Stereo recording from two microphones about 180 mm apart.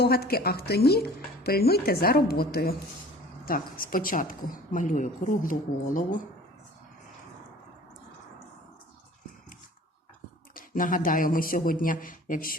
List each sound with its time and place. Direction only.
0.0 s a woman's voice: 60° left (ahead or behind)
10.5 s a woman's voice: 50° left (ahead or behind)